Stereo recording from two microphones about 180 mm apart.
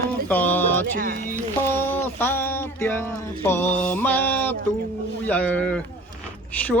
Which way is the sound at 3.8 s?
50° left (ahead or behind).